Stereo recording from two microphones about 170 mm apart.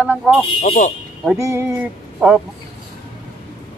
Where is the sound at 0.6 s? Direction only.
55° left (ahead or behind).